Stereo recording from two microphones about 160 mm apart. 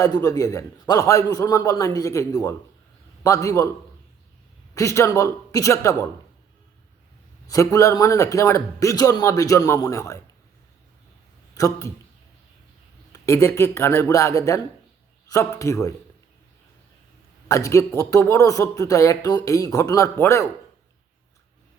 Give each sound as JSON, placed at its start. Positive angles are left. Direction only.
{"t": 0.0, "sound": "speech", "side_deg": 20}
{"t": 4.7, "sound": "speech", "side_deg": 20}
{"t": 7.4, "sound": "speech", "side_deg": 20}
{"t": 11.5, "sound": "speech", "side_deg": 20}
{"t": 13.1, "sound": "speech", "side_deg": 15}
{"t": 17.5, "sound": "speech", "side_deg": 20}